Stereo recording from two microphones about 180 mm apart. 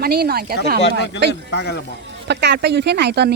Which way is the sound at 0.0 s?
60° right (ahead or behind).